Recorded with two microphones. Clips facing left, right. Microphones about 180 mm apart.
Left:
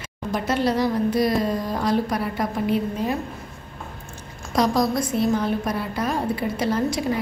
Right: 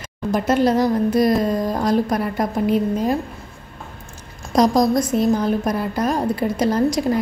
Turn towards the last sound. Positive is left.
turn(degrees=-40)  # may be behind; listen again after turning